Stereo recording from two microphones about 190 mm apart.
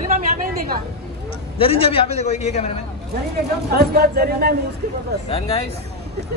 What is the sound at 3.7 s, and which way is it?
Speech, 55° right (ahead or behind).